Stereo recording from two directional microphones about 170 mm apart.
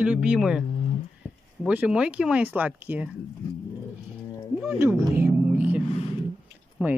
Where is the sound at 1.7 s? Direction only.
5° right (ahead or behind).